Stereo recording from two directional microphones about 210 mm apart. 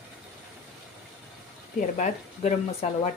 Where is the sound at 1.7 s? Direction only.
35° left (ahead or behind).